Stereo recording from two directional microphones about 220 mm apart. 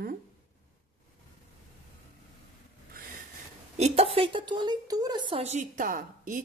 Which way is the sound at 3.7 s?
30° right (ahead or behind).